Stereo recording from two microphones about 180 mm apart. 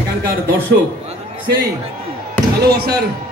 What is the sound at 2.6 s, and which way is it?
Speech, 60° right (ahead or behind).